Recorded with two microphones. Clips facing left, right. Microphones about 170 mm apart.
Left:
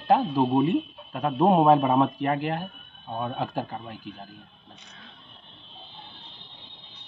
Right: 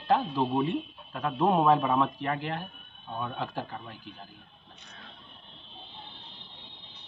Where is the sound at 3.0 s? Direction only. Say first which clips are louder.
Left 4 dB; 25° left (ahead or behind).